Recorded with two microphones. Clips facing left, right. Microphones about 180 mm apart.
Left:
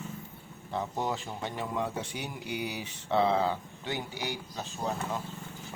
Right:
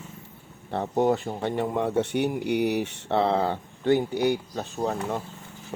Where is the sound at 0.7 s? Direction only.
65° right (ahead or behind).